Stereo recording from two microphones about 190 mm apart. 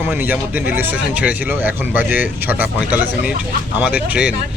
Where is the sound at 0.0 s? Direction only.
10° right (ahead or behind).